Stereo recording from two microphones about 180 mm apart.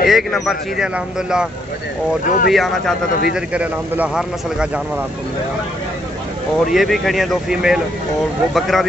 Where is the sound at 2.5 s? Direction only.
Centre (ahead or behind).